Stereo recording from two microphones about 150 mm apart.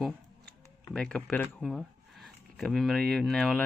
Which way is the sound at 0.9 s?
5° left (ahead or behind).